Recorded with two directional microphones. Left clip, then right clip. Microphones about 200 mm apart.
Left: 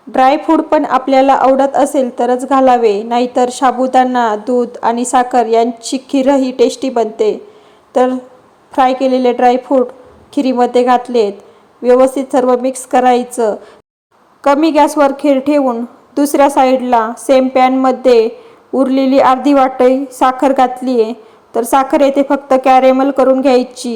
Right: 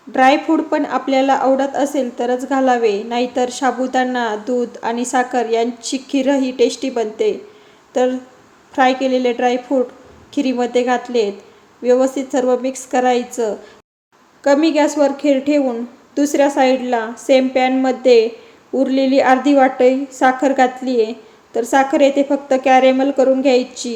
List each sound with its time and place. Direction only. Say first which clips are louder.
0.1 s a woman's voice: left 3 dB; 20° left (ahead or behind)